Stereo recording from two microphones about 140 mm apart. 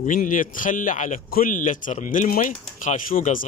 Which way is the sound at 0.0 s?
65° left (ahead or behind).